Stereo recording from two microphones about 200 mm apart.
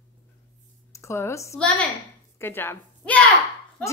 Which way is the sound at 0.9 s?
15° left (ahead or behind).